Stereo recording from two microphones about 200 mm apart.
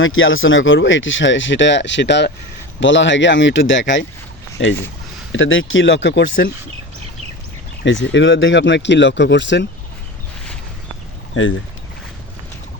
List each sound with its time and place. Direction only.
0.0 s speech: 80° left; by 4.8 s 65° left (ahead or behind)
5.3 s speech: 75° left (ahead or behind)
7.9 s speech: 65° left (ahead or behind)